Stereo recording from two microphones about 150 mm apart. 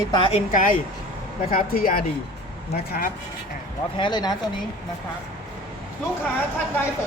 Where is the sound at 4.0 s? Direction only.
30° left (ahead or behind).